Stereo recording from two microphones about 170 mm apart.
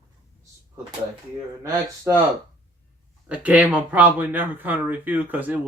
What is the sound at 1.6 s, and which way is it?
Speech, 20° right (ahead or behind).